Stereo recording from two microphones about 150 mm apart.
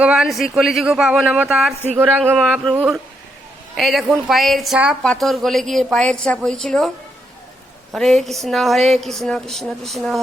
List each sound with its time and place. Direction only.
0.0 s speech: 5° right (ahead or behind)
7.9 s speech: 5° left (ahead or behind)